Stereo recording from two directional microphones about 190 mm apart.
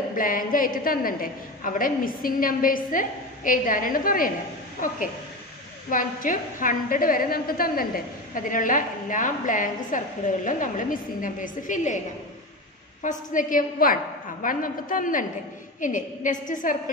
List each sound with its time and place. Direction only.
0.1 s a woman's voice: 45° left (ahead or behind)
5.9 s a woman's voice: 45° left (ahead or behind)
13.0 s a woman's voice: 45° left (ahead or behind)